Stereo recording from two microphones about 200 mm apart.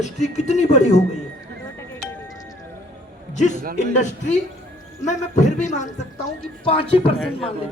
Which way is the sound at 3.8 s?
35° left (ahead or behind).